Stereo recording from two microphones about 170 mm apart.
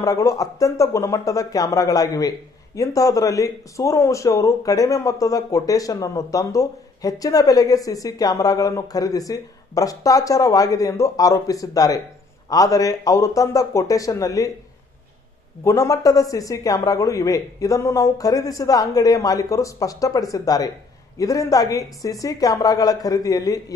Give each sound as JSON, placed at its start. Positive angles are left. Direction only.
{"t": 0.0, "sound": "speech", "side_deg": 20}
{"t": 15.6, "sound": "speech", "side_deg": 20}